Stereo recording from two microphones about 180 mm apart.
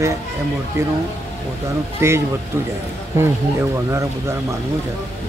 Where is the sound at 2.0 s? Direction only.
15° right (ahead or behind).